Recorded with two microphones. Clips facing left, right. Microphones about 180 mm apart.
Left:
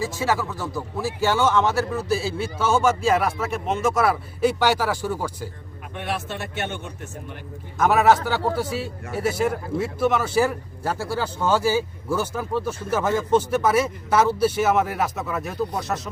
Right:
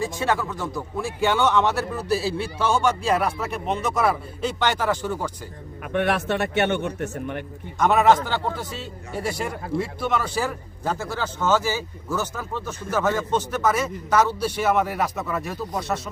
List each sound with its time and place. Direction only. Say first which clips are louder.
0.0 s a man's voice: even; 5° left (ahead or behind)
5.8 s a man's voice: right 7 dB; 65° right (ahead or behind)
7.8 s a man's voice: even; 5° left (ahead or behind)